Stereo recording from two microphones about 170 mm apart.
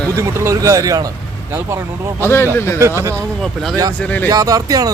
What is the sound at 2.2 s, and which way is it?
Speech, 15° left (ahead or behind).